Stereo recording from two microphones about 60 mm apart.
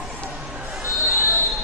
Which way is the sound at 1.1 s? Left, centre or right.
Right.